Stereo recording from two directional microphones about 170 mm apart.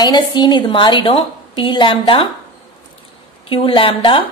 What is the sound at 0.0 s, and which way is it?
A woman's voice, 25° left (ahead or behind).